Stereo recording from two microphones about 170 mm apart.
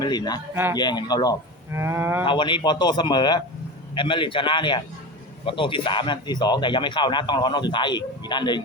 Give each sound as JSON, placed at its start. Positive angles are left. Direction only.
{"t": 0.0, "sound": "speech", "side_deg": 25}
{"t": 0.5, "sound": "cattle", "side_deg": -15}
{"t": 0.8, "sound": "speech", "side_deg": 25}
{"t": 1.7, "sound": "cattle", "side_deg": -15}
{"t": 2.2, "sound": "speech", "side_deg": 30}